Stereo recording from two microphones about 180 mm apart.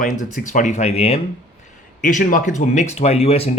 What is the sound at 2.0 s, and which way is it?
Speech, 45° left (ahead or behind).